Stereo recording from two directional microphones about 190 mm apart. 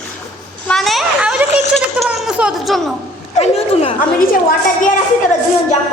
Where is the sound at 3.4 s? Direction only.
30° left (ahead or behind).